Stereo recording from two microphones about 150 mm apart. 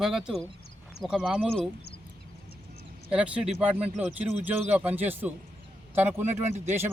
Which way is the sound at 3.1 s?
5° right (ahead or behind).